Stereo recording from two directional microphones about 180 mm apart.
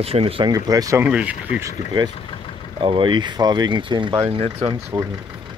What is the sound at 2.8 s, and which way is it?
Speech, 30° right (ahead or behind).